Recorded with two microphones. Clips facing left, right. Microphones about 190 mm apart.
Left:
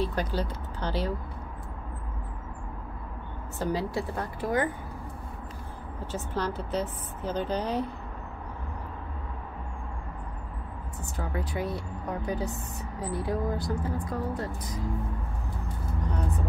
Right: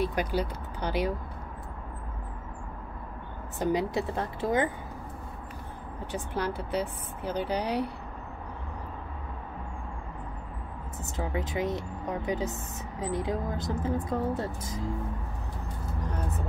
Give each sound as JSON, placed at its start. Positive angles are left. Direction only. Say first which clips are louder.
{"t": 0.0, "sound": "a woman's voice", "louder": "right 1 dB", "side_deg": -10}
{"t": 3.5, "sound": "speech", "louder": "right 2 dB", "side_deg": -20}
{"t": 6.1, "sound": "a woman's voice", "louder": "even", "side_deg": -10}
{"t": 11.1, "sound": "speech", "louder": "right 2 dB", "side_deg": -20}